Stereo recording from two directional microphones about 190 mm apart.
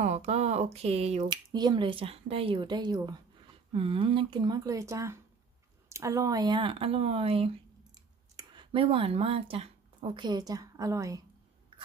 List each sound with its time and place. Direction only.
0.0 s speech: 35° right (ahead or behind)
1.3 s speech: 20° right (ahead or behind)